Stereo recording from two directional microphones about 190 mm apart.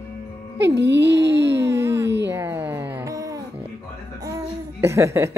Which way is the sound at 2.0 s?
65° right (ahead or behind).